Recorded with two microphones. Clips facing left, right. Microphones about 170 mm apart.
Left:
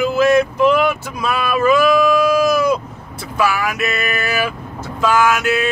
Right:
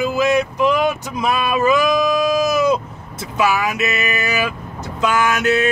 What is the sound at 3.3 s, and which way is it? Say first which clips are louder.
Vehicle: even; 20° right (ahead or behind).